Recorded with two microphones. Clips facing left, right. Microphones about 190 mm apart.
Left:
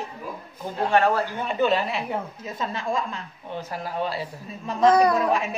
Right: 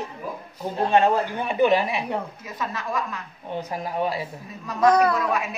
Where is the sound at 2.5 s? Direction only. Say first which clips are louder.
Left 2 dB; 25° left (ahead or behind).